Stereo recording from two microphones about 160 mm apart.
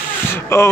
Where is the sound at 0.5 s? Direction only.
20° left (ahead or behind).